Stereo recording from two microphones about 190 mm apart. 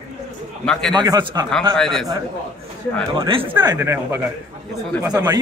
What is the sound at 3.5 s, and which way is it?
Speech, 20° right (ahead or behind).